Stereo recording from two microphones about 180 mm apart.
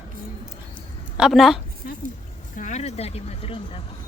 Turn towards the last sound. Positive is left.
turn(degrees=35)  # may be behind; listen again after turning